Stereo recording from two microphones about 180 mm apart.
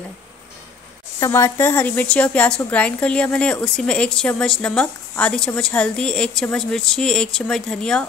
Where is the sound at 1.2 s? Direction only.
15° left (ahead or behind).